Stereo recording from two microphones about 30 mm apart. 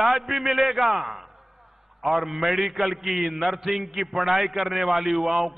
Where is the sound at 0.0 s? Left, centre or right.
Centre.